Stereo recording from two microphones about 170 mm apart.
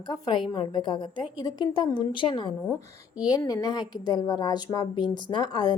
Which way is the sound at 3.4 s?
20° left (ahead or behind).